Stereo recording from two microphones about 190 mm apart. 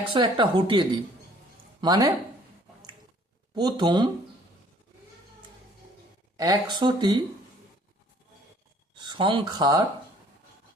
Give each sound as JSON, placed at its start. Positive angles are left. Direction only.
{"t": 0.1, "sound": "speech", "side_deg": -25}
{"t": 3.5, "sound": "speech", "side_deg": -20}
{"t": 6.3, "sound": "speech", "side_deg": -20}
{"t": 9.0, "sound": "speech", "side_deg": -25}